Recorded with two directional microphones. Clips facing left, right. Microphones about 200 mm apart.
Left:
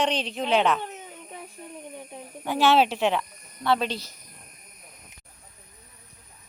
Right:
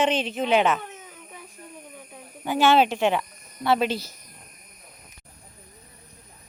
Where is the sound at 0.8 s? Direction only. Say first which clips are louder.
Left 3 dB; 30° left (ahead or behind).